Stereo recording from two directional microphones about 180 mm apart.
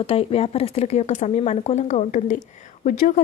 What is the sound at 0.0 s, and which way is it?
A woman's voice, 30° left (ahead or behind).